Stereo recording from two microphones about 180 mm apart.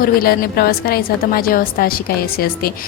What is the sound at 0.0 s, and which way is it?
A woman's voice, 55° left (ahead or behind).